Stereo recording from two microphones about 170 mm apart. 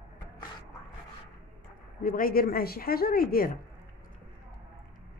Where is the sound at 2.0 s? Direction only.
55° left (ahead or behind).